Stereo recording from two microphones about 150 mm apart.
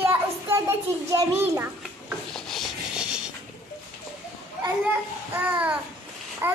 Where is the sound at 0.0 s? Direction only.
15° right (ahead or behind).